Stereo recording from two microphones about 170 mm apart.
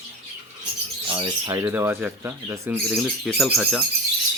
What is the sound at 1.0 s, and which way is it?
Speech, 20° right (ahead or behind).